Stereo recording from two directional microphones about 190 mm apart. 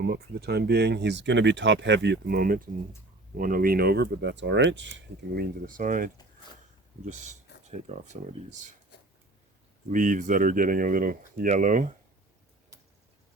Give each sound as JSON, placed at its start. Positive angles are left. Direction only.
{"t": 0.0, "sound": "speech", "side_deg": -55}
{"t": 8.9, "sound": "a sound", "side_deg": 60}
{"t": 9.9, "sound": "speech", "side_deg": -40}